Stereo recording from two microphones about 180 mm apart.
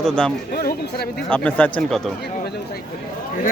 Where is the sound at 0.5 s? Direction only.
55° left (ahead or behind).